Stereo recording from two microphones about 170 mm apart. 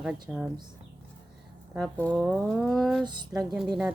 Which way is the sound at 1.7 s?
5° left (ahead or behind).